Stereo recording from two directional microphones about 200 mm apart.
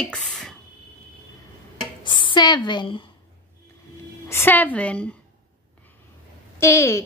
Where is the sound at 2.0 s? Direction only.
25° left (ahead or behind).